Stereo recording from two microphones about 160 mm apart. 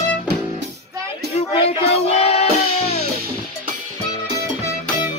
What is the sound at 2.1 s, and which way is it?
Music, 40° left (ahead or behind).